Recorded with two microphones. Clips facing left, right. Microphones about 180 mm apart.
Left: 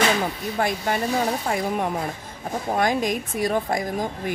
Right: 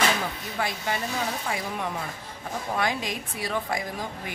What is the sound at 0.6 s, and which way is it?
Speech, 50° left (ahead or behind).